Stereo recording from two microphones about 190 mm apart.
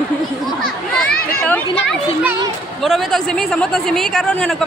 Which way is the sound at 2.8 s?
Centre (ahead or behind).